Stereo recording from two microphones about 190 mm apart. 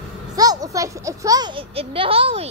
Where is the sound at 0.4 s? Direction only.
20° right (ahead or behind).